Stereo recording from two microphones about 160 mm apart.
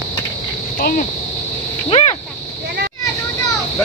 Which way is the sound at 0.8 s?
65° left (ahead or behind).